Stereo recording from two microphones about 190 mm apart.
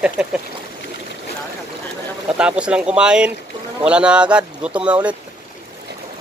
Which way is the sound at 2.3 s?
5° right (ahead or behind).